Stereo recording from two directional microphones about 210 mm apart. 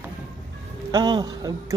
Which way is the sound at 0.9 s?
20° right (ahead or behind).